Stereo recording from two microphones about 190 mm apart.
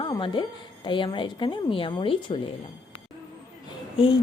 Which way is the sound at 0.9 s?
25° left (ahead or behind).